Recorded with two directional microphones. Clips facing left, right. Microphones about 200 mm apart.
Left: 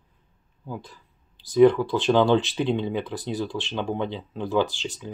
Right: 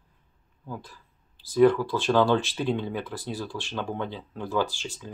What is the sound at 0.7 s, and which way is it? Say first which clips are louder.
Speech: left 3 dB; 15° left (ahead or behind).